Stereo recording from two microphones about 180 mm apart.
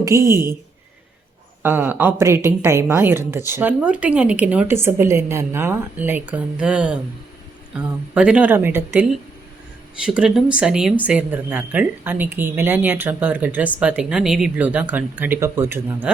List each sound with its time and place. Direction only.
0.0 s speech: 15° right (ahead or behind)
1.6 s speech: 10° right (ahead or behind)
10.1 s speech: centre (ahead or behind)